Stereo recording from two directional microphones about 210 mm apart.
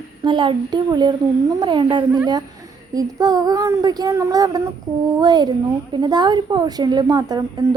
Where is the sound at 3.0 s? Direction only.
15° right (ahead or behind).